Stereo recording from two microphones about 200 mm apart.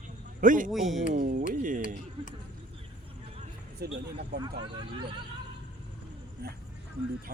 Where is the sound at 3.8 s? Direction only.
50° right (ahead or behind).